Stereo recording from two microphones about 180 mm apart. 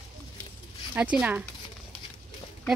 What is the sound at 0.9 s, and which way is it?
Speech, 10° right (ahead or behind).